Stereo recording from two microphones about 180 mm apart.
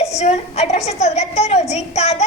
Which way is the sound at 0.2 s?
35° left (ahead or behind).